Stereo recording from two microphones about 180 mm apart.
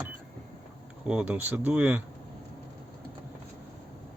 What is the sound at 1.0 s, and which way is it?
Speech, 5° right (ahead or behind).